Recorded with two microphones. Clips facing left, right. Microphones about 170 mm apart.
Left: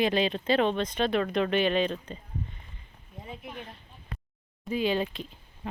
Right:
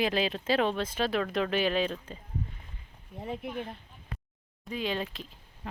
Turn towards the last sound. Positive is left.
turn(degrees=0)  # may be behind; listen again after turning